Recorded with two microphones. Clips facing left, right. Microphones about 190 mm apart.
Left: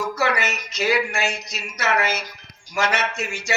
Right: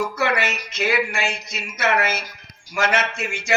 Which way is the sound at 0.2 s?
55° right (ahead or behind).